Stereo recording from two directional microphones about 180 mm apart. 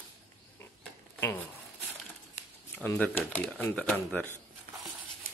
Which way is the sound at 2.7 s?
10° left (ahead or behind).